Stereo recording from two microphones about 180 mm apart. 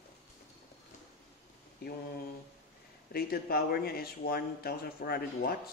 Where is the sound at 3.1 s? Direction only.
60° left (ahead or behind).